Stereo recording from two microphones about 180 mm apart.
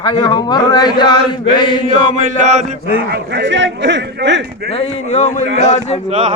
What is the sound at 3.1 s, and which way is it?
A man's voice, 75° right (ahead or behind).